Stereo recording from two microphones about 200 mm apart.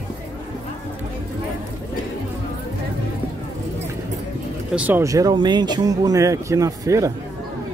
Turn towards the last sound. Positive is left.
turn(degrees=-15)  # may be behind; listen again after turning